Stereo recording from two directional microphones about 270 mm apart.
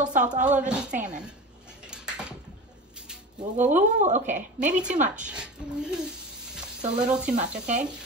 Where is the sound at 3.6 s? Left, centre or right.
Right.